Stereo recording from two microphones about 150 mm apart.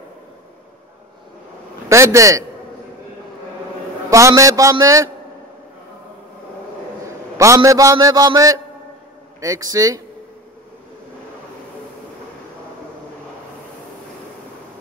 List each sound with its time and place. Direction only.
1.9 s a man's voice: 20° right (ahead or behind)
4.1 s a man's voice: 20° right (ahead or behind)
7.3 s a man's voice: 20° right (ahead or behind)